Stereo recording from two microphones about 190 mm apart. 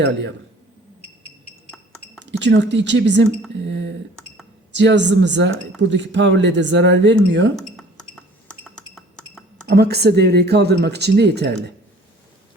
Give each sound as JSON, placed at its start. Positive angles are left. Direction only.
{"t": 0.0, "sound": "speech", "side_deg": -70}
{"t": 2.4, "sound": "speech", "side_deg": -65}
{"t": 7.5, "sound": "glass", "side_deg": 5}
{"t": 9.6, "sound": "speech", "side_deg": -55}